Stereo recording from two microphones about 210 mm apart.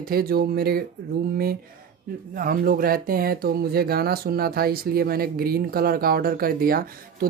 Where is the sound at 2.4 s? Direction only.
40° right (ahead or behind).